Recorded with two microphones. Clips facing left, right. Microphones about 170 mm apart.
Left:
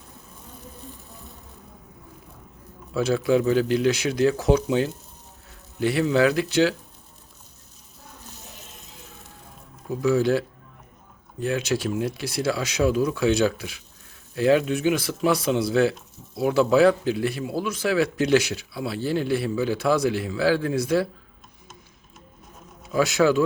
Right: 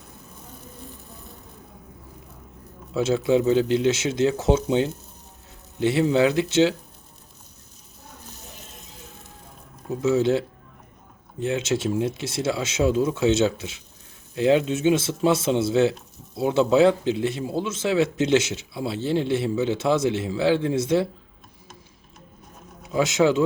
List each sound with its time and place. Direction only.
2.9 s speech: 25° right (ahead or behind)
10.0 s speech: 20° right (ahead or behind)
22.9 s speech: 20° right (ahead or behind)